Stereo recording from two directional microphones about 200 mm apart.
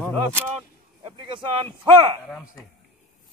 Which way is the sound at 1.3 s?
25° right (ahead or behind).